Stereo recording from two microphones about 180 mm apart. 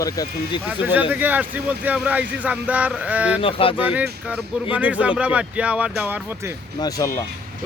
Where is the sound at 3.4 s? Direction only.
30° left (ahead or behind).